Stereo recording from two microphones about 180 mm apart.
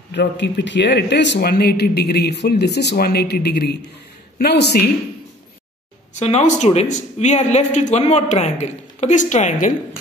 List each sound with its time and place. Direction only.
0.1 s speech: 70° left (ahead or behind)
6.1 s speech: 40° left (ahead or behind)